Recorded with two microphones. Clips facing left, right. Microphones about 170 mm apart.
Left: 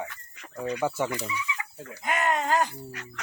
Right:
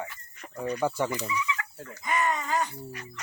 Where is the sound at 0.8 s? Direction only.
10° left (ahead or behind).